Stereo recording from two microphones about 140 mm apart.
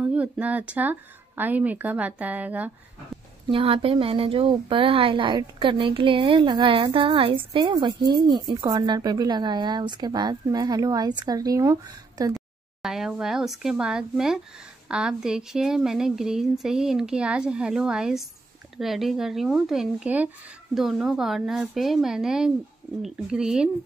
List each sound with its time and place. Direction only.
0.1 s speech: 10° right (ahead or behind)
3.4 s a woman's voice: 40° right (ahead or behind)
12.4 s speech: 5° right (ahead or behind)